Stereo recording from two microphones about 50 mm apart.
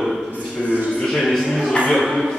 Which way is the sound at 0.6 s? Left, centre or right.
Centre.